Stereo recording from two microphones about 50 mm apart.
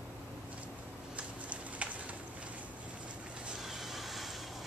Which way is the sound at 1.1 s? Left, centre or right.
Right.